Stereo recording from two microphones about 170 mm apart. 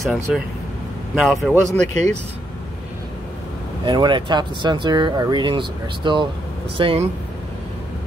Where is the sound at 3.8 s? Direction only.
25° right (ahead or behind).